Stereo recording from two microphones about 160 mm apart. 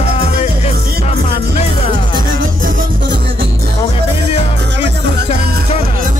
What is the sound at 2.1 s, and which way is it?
Music, 65° right (ahead or behind).